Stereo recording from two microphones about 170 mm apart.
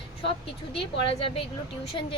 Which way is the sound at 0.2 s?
30° left (ahead or behind).